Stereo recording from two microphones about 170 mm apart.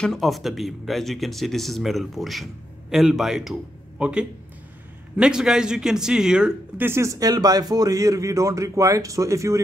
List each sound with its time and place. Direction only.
0.0 s speech: centre (ahead or behind); by 9.6 s 20° right (ahead or behind)